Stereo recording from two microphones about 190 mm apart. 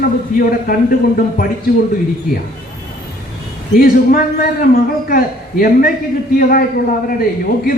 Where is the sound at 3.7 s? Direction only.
50° left (ahead or behind).